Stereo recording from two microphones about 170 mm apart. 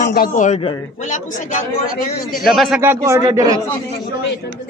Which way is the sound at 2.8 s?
15° right (ahead or behind).